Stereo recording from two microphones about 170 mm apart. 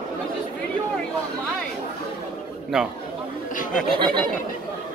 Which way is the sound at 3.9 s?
30° right (ahead or behind).